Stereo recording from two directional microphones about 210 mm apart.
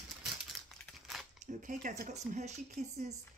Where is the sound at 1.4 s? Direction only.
40° right (ahead or behind).